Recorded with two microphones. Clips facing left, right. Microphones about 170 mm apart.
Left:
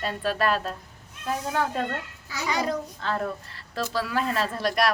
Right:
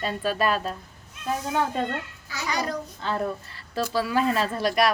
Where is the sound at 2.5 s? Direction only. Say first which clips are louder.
Left 2 dB; 25° left (ahead or behind).